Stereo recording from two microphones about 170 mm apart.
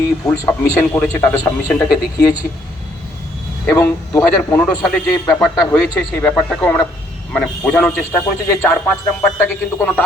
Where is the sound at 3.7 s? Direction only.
10° left (ahead or behind).